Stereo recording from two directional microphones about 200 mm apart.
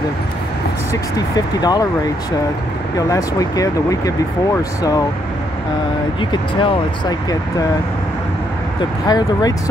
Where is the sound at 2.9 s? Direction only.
15° left (ahead or behind).